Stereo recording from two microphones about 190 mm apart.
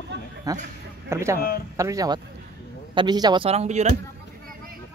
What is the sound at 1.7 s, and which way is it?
Speech, 15° right (ahead or behind).